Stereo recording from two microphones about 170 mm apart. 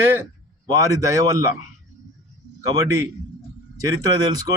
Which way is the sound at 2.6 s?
20° right (ahead or behind).